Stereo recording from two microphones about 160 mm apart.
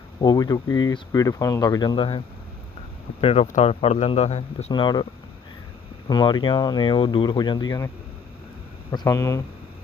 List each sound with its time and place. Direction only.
0.2 s speech: 25° left (ahead or behind); by 4.4 s 40° left (ahead or behind)
4.7 s speech: 25° left (ahead or behind)
6.1 s speech: 30° left (ahead or behind)
8.9 s speech: 20° left (ahead or behind)